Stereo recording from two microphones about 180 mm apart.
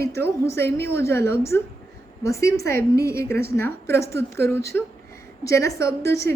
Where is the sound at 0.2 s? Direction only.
15° left (ahead or behind).